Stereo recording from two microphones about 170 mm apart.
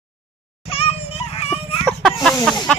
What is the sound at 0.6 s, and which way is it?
Children playing, 35° left (ahead or behind).